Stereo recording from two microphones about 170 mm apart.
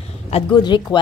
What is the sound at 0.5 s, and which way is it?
Speech, 25° left (ahead or behind).